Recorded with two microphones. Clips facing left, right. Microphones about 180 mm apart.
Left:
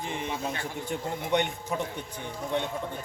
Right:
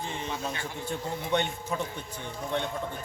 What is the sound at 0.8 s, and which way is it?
A man's voice, 15° left (ahead or behind).